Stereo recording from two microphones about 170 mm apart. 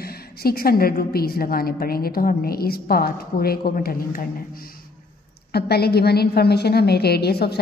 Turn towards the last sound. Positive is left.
turn(degrees=70)  # may be behind; listen again after turning